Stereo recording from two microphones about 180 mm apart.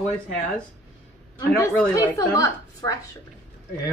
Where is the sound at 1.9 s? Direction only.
20° left (ahead or behind).